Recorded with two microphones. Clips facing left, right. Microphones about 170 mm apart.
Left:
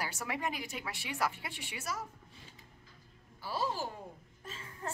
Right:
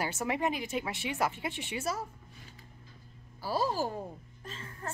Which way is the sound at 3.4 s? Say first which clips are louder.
Right 5 dB; 40° right (ahead or behind).